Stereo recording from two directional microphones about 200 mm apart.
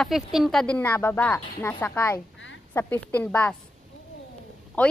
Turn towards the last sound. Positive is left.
turn(degrees=5)  # may be behind; listen again after turning